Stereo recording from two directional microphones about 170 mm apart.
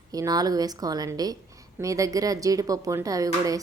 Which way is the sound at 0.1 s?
20° right (ahead or behind).